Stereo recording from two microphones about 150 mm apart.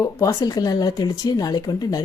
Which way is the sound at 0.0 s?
20° left (ahead or behind).